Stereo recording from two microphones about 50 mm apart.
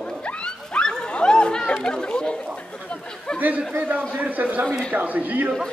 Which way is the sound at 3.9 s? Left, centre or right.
Right.